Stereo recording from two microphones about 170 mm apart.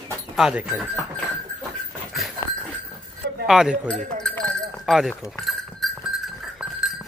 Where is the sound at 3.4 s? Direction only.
5° right (ahead or behind).